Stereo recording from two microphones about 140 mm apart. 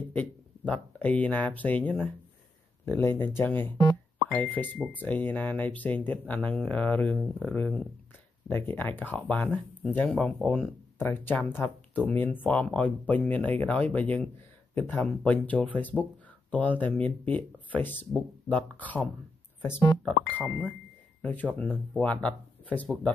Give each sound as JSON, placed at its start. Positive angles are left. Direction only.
{"t": 0.1, "sound": "speech", "side_deg": 10}
{"t": 20.1, "sound": "speech", "side_deg": 5}